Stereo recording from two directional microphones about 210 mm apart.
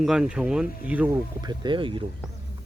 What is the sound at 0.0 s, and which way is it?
Speech, 5° right (ahead or behind).